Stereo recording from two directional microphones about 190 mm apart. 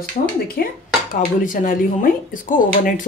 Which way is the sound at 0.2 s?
40° left (ahead or behind).